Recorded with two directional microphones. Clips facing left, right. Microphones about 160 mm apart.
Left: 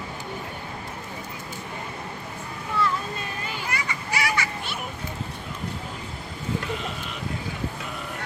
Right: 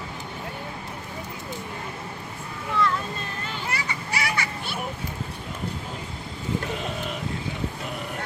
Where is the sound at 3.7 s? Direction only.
30° right (ahead or behind).